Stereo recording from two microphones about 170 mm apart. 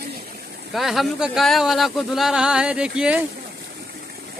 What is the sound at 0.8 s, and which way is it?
Speech, centre (ahead or behind).